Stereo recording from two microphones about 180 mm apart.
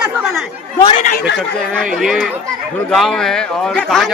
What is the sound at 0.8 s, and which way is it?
Speech, 35° left (ahead or behind).